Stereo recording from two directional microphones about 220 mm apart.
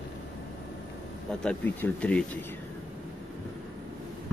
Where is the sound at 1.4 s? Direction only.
5° left (ahead or behind).